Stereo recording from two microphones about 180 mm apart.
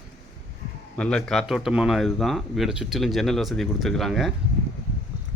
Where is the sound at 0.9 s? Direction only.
5° left (ahead or behind).